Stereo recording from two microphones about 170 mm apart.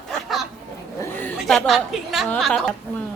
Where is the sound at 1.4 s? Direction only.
Centre (ahead or behind).